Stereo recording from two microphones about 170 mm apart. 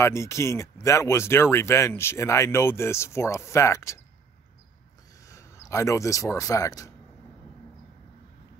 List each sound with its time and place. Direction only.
0.0 s speech: 15° left (ahead or behind)
5.2 s speech: 20° left (ahead or behind)